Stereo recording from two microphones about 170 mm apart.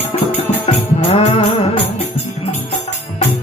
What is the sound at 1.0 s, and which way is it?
Music, 35° left (ahead or behind).